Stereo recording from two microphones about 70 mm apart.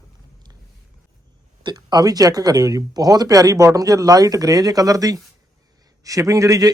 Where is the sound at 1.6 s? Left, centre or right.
Right.